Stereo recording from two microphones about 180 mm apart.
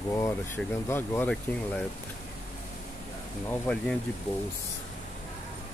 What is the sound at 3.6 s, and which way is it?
Speech, 5° left (ahead or behind).